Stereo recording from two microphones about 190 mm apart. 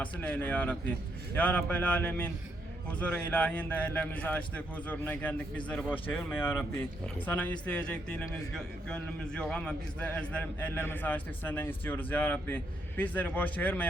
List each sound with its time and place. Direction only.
0.0 s a man's voice: 10° left (ahead or behind)